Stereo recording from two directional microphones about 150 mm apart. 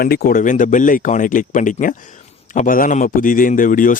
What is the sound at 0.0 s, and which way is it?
A man's voice, 90° left.